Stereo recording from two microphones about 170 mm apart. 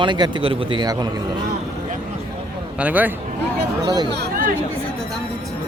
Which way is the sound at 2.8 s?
10° right (ahead or behind).